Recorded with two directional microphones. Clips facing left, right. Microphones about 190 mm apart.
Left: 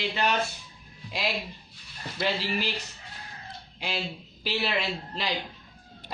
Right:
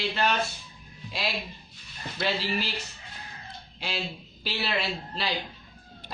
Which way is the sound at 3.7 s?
15° left (ahead or behind).